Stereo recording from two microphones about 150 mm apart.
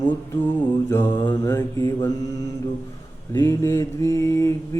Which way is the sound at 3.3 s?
15° left (ahead or behind).